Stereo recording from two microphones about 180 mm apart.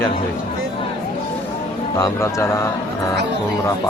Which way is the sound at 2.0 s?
15° left (ahead or behind).